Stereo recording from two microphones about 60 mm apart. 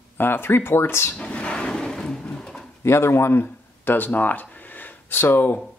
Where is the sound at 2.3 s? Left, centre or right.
Centre.